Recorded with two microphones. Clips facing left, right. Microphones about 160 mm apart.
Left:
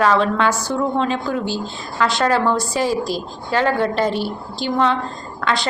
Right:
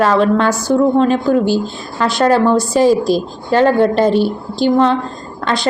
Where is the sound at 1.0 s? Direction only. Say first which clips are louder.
Right 8 dB; 45° right (ahead or behind).